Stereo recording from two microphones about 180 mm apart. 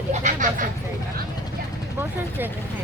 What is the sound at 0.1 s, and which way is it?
Vehicle, 40° right (ahead or behind).